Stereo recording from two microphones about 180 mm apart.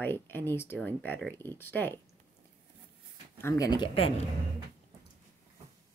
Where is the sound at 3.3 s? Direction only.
15° left (ahead or behind).